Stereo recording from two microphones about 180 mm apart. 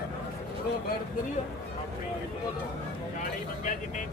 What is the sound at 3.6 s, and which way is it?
Vehicle, 45° left (ahead or behind).